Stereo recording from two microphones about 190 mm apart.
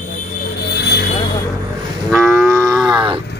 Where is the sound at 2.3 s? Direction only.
15° right (ahead or behind).